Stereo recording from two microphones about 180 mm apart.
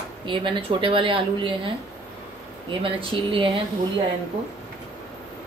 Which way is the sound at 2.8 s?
30° right (ahead or behind).